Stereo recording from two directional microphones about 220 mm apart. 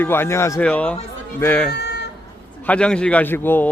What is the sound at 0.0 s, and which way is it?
A man's voice, 10° left (ahead or behind).